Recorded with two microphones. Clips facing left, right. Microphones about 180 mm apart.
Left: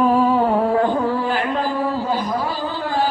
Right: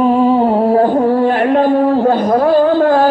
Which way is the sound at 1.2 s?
60° right (ahead or behind).